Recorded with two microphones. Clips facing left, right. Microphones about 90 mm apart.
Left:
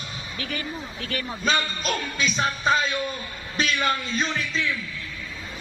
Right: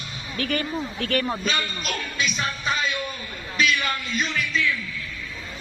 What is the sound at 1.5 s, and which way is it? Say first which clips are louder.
Speech: left 3 dB; 35° left (ahead or behind).